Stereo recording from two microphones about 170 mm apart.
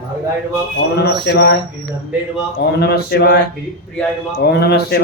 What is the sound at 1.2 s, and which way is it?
Speech, 80° left.